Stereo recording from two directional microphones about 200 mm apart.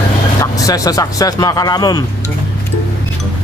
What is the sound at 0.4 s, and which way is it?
Speech, 15° left (ahead or behind).